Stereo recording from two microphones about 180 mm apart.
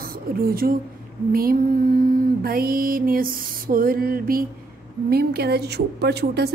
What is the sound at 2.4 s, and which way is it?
Music, 55° right (ahead or behind).